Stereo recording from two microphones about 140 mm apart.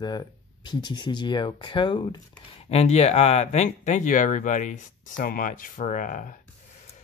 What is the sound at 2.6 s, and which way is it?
Speech, 50° left (ahead or behind).